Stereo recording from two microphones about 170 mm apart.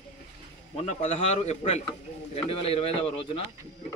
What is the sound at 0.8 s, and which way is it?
Speech, 40° left (ahead or behind).